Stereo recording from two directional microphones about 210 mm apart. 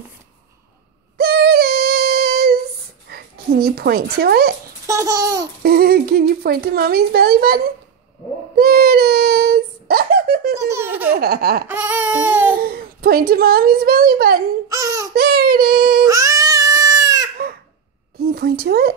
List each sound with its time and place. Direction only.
1.1 s female singing: 50° right (ahead or behind)
3.1 s speech: 50° right (ahead or behind)
4.8 s laughter: 15° right (ahead or behind)
5.6 s speech: 45° right (ahead or behind)
8.5 s child singing: 45° right (ahead or behind)
10.5 s baby laughter: 15° right (ahead or behind)
11.1 s speech: 45° right (ahead or behind)
11.6 s baby cry: 10° right (ahead or behind)
12.5 s a woman's voice: 45° right (ahead or behind)
14.7 s a sound: 15° right (ahead or behind)
15.1 s child singing: 45° right (ahead or behind)
16.1 s baby cry: 15° right (ahead or behind)
18.2 s a woman's voice: 45° right (ahead or behind)